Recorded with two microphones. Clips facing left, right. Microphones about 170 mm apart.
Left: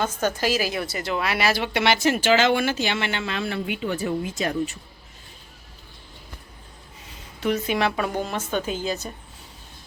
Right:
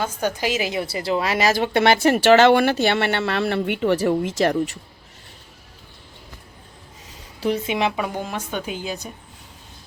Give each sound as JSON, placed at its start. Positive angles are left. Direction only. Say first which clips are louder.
{"t": 0.0, "sound": "a woman's voice", "louder": "even", "side_deg": -10}
{"t": 7.3, "sound": "speech", "louder": "right 1 dB", "side_deg": -30}
{"t": 7.8, "sound": "a woman's voice", "louder": "even", "side_deg": -15}